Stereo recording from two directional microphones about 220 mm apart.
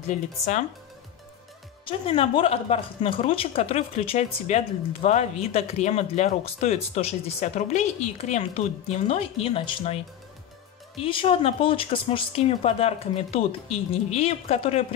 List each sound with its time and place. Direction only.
1.9 s speech: 25° left (ahead or behind)
11.0 s speech: 25° left (ahead or behind)